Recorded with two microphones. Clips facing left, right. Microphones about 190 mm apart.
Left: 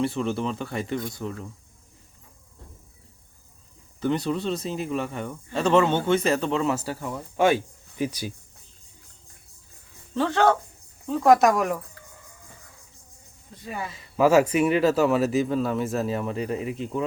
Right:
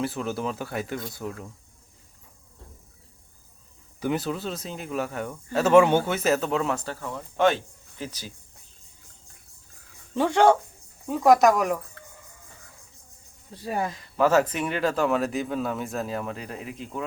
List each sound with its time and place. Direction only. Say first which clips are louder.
0.0 s speech: left 3 dB; 5° right (ahead or behind)
4.0 s speech: left 2 dB; 5° right (ahead or behind); by 8.3 s 10° left (ahead or behind)
10.2 s speech: right 2 dB; 15° right (ahead or behind)
11.2 s speech: even; centre (ahead or behind)
13.5 s speech: right 5 dB; 35° right (ahead or behind)
13.9 s speech: left 4 dB; 5° left (ahead or behind)